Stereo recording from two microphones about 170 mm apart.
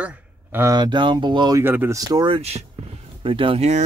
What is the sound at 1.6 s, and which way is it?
Speech, 10° right (ahead or behind).